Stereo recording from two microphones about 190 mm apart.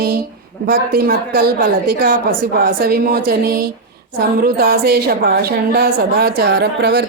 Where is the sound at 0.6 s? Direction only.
50° right (ahead or behind).